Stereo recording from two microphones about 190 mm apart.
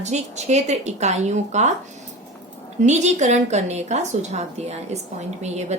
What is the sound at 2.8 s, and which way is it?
A woman's voice, 35° right (ahead or behind).